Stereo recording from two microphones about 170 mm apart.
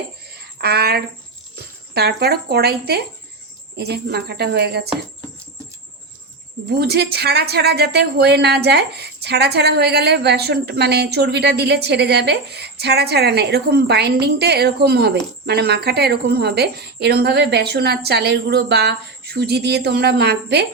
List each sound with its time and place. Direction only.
0.3 s a woman's voice: 70° right (ahead or behind)
6.7 s a woman's voice: 75° right (ahead or behind)